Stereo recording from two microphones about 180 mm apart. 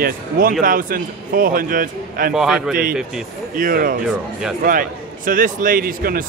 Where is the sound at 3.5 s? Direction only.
50° right (ahead or behind).